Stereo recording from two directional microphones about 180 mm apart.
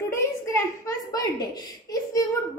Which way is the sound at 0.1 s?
15° left (ahead or behind).